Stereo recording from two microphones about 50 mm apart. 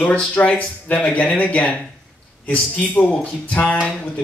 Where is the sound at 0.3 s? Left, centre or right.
Left.